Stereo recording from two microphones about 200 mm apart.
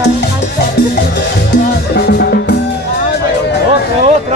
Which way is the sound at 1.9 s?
50° left (ahead or behind).